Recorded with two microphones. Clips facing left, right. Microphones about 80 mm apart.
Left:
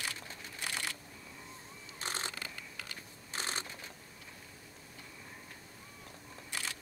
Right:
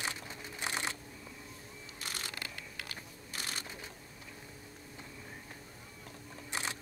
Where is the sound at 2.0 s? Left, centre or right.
Left.